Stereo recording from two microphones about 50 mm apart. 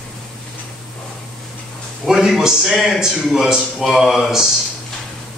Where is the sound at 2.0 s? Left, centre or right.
Centre.